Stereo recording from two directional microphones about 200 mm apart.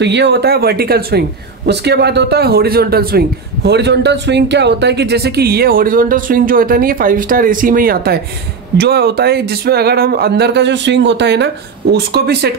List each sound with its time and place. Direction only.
0.0 s a man's voice: 60° right (ahead or behind)